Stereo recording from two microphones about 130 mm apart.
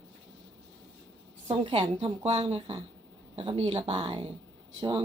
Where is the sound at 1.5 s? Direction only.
50° right (ahead or behind).